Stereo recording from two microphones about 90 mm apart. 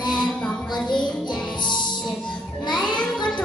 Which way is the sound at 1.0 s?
60° left (ahead or behind).